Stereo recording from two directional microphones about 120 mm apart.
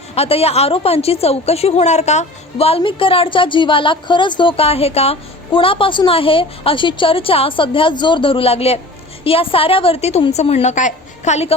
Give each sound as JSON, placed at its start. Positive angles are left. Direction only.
{"t": 0.1, "sound": "a woman's voice", "side_deg": 55}
{"t": 5.5, "sound": "a woman's voice", "side_deg": 45}